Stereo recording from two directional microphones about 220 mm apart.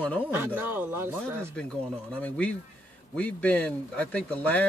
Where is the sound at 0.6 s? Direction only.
10° right (ahead or behind).